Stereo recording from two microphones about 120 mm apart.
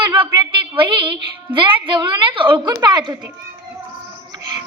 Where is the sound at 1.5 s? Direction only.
40° right (ahead or behind).